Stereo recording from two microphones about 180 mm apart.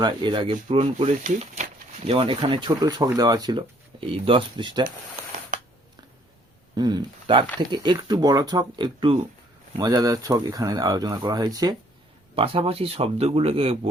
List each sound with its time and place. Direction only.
0.0 s speech: 25° right (ahead or behind)
1.2 s speech: 45° right (ahead or behind); by 4.9 s 25° right (ahead or behind)
6.7 s speech: 25° right (ahead or behind)